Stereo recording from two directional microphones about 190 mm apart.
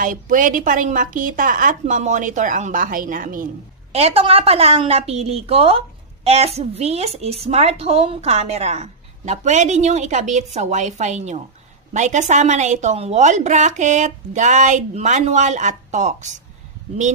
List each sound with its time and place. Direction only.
0.0 s a woman's voice: 45° right (ahead or behind)
3.9 s a woman's voice: 30° right (ahead or behind)